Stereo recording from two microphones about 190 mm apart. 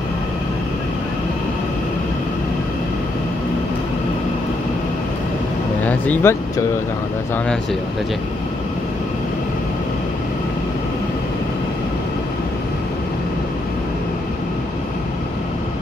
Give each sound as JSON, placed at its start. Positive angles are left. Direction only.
{"t": 5.9, "sound": "vehicle", "side_deg": 10}